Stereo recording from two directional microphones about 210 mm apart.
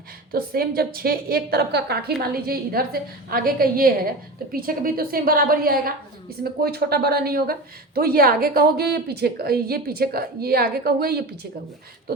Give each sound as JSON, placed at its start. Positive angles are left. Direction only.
{"t": 0.3, "sound": "a woman's voice", "side_deg": -45}